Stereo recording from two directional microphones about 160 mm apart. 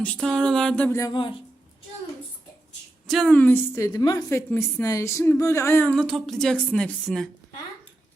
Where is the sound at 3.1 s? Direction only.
5° left (ahead or behind).